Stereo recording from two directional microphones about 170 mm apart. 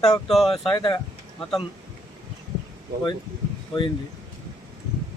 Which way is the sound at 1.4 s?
5° left (ahead or behind).